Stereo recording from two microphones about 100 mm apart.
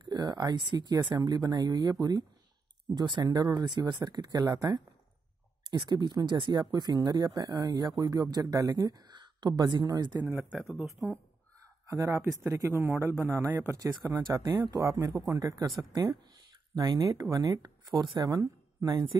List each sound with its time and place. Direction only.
0.0 s speech: 45° right (ahead or behind)
10.2 s speech: 20° right (ahead or behind)
10.6 s speech: centre (ahead or behind)
11.9 s speech: 30° right (ahead or behind)
14.5 s speech: 40° right (ahead or behind)
16.7 s a woman's voice: 45° right (ahead or behind)